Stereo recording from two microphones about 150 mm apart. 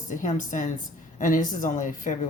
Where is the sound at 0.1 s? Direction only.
55° left (ahead or behind).